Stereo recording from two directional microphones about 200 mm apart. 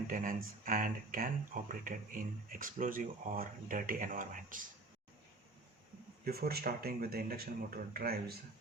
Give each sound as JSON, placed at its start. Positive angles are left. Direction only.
{"t": 0.1, "sound": "speech", "side_deg": -45}
{"t": 6.2, "sound": "speech", "side_deg": -50}